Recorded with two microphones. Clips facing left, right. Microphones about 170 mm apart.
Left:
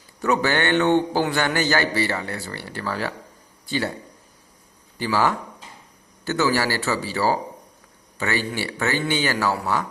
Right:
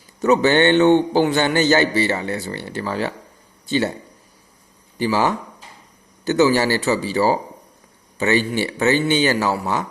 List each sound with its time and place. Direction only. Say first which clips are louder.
0.2 s a man's voice: right 6 dB; 20° right (ahead or behind)
4.9 s a man's voice: right 3 dB; 20° right (ahead or behind)